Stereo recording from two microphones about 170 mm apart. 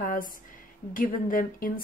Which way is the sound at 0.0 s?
55° left (ahead or behind).